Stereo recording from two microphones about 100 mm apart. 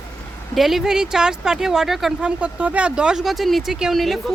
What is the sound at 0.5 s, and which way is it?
Speech, centre (ahead or behind).